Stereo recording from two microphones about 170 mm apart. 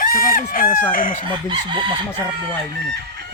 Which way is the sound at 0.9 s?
55° left (ahead or behind).